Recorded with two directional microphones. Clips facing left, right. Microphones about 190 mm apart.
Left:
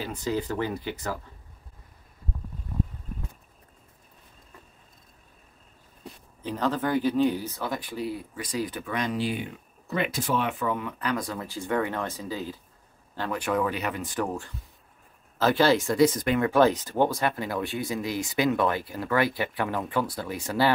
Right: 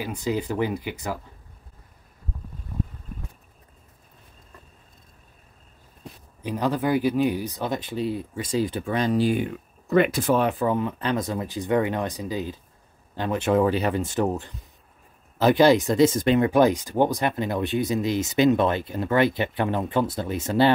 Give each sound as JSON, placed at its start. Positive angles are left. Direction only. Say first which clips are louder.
{"t": 0.0, "sound": "speech", "louder": "right 2 dB", "side_deg": -15}
{"t": 6.4, "sound": "speech", "louder": "right 3 dB", "side_deg": -10}
{"t": 10.4, "sound": "speech", "louder": "right 6 dB", "side_deg": -30}